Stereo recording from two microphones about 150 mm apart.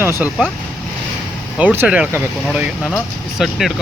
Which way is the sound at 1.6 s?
10° right (ahead or behind).